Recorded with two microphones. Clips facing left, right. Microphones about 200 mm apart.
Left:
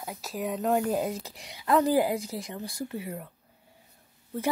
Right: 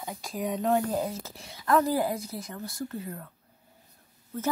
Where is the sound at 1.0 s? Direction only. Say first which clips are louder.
Left 1 dB; 15° left (ahead or behind).